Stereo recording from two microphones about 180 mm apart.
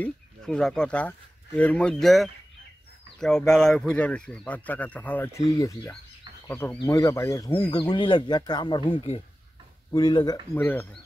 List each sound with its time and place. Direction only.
0.0 s speech: 5° left (ahead or behind)
6.4 s speech: 15° left (ahead or behind)